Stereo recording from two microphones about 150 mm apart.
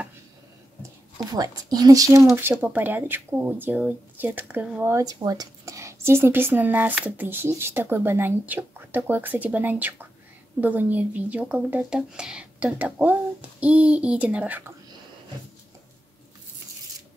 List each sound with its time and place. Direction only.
1.1 s speech: 25° right (ahead or behind)
2.5 s speech: 10° right (ahead or behind)